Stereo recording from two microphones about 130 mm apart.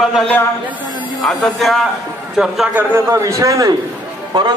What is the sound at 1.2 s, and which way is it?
A man's voice, centre (ahead or behind).